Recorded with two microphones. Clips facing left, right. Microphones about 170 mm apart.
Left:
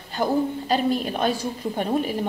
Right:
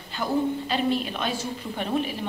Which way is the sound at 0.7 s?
40° left (ahead or behind).